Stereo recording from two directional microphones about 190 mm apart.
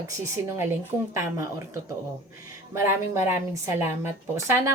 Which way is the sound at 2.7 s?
15° right (ahead or behind).